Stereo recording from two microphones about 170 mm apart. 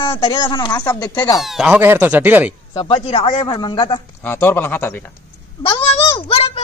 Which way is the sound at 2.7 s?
30° left (ahead or behind).